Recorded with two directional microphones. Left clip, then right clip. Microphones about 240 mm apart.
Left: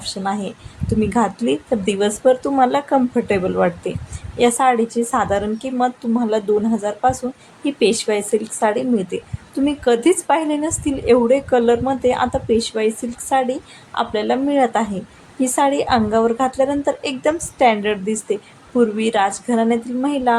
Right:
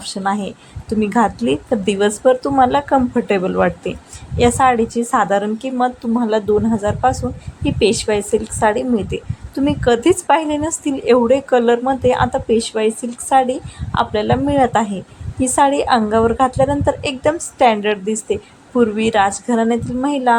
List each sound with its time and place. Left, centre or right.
0.0 s a woman's voice: centre